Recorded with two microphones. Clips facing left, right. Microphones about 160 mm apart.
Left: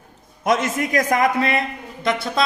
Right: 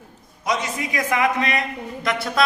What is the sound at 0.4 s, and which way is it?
A man's voice, 50° left (ahead or behind).